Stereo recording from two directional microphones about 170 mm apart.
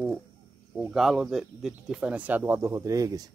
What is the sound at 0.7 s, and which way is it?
Speech, centre (ahead or behind).